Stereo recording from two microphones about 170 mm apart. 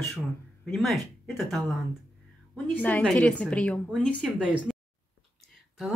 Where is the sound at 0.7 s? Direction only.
Centre (ahead or behind).